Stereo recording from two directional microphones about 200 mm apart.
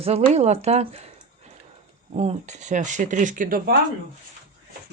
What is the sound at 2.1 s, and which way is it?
Speech, 30° right (ahead or behind).